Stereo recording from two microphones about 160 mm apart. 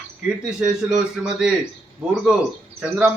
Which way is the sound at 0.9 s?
5° right (ahead or behind).